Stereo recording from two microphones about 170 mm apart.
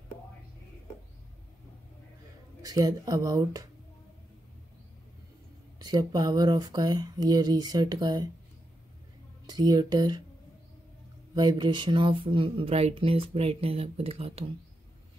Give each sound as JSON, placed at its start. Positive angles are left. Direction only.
{"t": 2.6, "sound": "speech", "side_deg": -20}
{"t": 5.8, "sound": "speech", "side_deg": -25}
{"t": 9.5, "sound": "speech", "side_deg": -25}
{"t": 11.3, "sound": "speech", "side_deg": -25}